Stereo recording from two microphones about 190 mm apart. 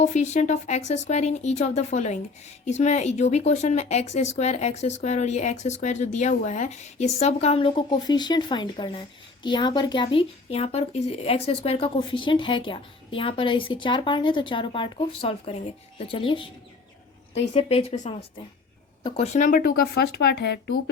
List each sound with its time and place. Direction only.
0.0 s speech: 35° left (ahead or behind)
17.5 s speech: 30° left (ahead or behind); by 20.7 s 60° left (ahead or behind)